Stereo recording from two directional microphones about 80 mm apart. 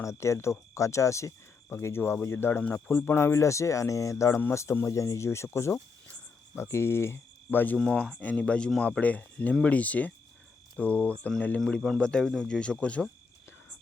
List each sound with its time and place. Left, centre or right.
0.0 s speech: left
7.8 s speech: centre
8.2 s speech: centre
10.8 s cricket: centre
11.3 s speech: centre